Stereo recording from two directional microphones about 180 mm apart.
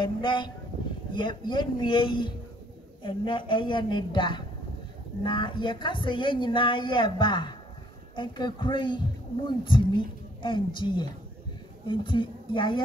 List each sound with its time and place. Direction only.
0.0 s speech: 25° left (ahead or behind)